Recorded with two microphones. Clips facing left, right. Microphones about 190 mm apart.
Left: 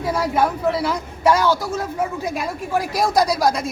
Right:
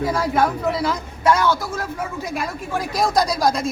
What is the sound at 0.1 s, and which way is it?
Speech, 5° left (ahead or behind).